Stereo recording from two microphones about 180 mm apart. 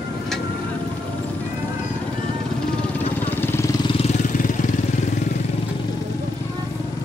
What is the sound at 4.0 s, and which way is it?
Vehicle, 45° left (ahead or behind).